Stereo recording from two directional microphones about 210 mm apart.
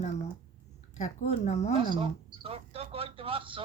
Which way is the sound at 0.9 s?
35° left (ahead or behind).